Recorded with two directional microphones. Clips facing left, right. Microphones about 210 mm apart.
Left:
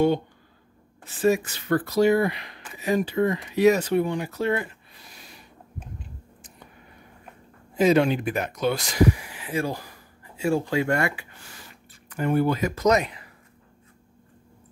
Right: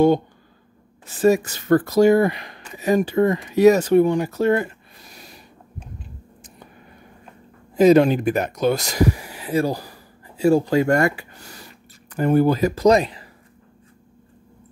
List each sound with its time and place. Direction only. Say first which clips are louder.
1.0 s speech: right 5 dB; 40° right (ahead or behind)
7.7 s speech: right 6 dB; 40° right (ahead or behind)